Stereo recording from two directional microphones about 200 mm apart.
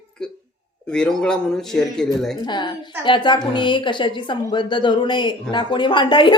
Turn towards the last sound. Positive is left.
turn(degrees=25)  # may be behind; listen again after turning